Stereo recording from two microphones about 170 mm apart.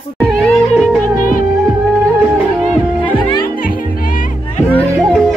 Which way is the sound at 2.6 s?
10° left (ahead or behind).